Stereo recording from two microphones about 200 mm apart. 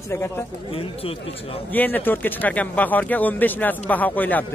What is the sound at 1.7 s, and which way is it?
Speech, 10° left (ahead or behind).